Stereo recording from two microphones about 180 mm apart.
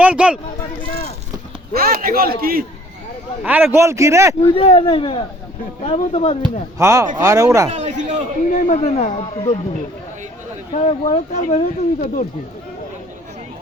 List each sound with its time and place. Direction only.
0.0 s a man's voice: 5° right (ahead or behind)
1.7 s a man's voice: 55° right (ahead or behind)
3.4 s a man's voice: 10° right (ahead or behind)
4.4 s speech: 30° left (ahead or behind)
6.4 s a man's voice: 20° right (ahead or behind)
7.7 s a man's voice: 40° right (ahead or behind)
8.6 s speech: 40° left (ahead or behind)
10.7 s speech: 35° left (ahead or behind)